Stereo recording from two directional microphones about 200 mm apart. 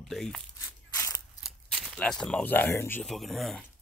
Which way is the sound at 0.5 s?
15° left (ahead or behind).